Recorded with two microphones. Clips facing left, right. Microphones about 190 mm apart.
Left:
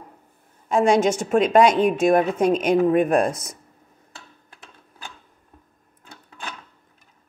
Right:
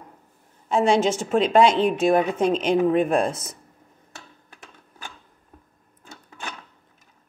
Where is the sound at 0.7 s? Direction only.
15° left (ahead or behind).